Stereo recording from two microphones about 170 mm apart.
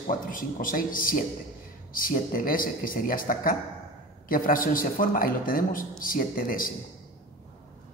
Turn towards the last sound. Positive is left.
turn(degrees=55)  # may be behind; listen again after turning